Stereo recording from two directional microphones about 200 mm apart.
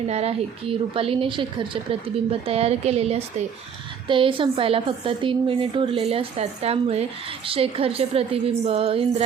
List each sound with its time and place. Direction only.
0.1 s a woman's voice: 30° right (ahead or behind)